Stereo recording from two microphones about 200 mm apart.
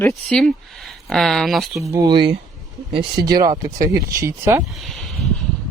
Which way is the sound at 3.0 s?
55° right (ahead or behind).